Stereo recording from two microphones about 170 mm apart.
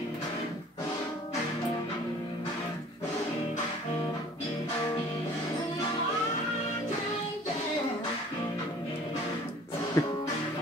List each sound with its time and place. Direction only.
10.0 s music: 20° left (ahead or behind)